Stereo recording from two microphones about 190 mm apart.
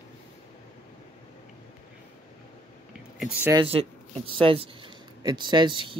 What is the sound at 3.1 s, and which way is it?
Speech, 5° right (ahead or behind).